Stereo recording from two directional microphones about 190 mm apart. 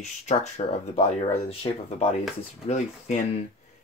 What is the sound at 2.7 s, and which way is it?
Speech, 40° left (ahead or behind).